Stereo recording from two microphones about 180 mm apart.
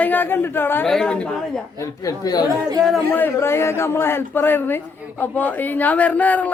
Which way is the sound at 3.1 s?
10° left (ahead or behind).